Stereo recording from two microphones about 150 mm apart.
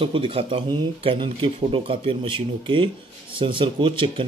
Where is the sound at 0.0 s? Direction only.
35° right (ahead or behind).